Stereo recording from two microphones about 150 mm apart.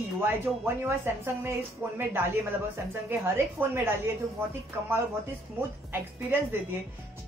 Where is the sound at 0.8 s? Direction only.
15° right (ahead or behind).